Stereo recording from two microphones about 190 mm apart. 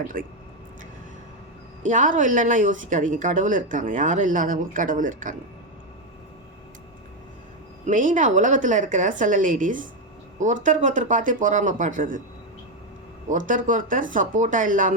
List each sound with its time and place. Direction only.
0.1 s a woman's voice: 45° right (ahead or behind)
1.8 s a woman's voice: 40° right (ahead or behind)
7.9 s a woman's voice: 40° right (ahead or behind)
13.3 s a woman's voice: 45° right (ahead or behind)